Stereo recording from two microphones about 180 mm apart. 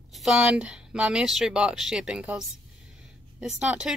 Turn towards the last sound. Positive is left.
turn(degrees=-5)  # may be behind; listen again after turning